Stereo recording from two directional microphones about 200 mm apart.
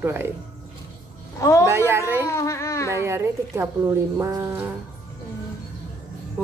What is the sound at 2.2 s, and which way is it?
Speech, 15° left (ahead or behind).